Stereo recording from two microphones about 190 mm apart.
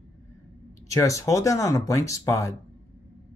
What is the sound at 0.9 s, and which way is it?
Speech, 15° left (ahead or behind).